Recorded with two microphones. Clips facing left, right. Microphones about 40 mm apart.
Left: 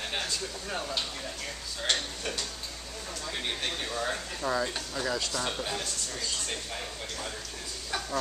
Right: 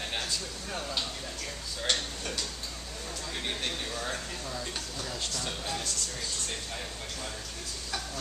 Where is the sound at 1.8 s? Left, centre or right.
Centre.